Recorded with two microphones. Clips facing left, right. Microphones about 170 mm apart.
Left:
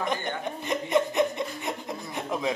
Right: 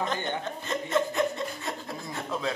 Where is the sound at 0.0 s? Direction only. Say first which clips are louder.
Left 1 dB; 15° left (ahead or behind).